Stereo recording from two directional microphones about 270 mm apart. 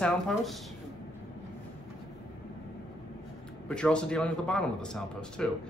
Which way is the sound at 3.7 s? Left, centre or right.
Centre.